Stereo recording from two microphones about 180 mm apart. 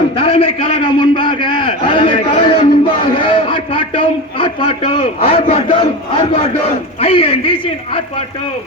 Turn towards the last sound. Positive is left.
turn(degrees=30)  # may be behind; listen again after turning